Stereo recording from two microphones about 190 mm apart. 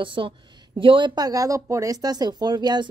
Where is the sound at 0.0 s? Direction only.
25° right (ahead or behind).